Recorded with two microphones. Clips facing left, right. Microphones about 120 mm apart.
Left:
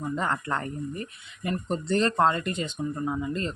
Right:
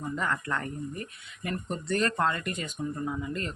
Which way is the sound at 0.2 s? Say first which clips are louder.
Left 1 dB; 30° left (ahead or behind).